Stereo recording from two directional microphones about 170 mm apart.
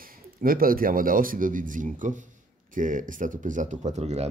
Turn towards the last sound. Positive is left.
turn(degrees=-40)  # may be behind; listen again after turning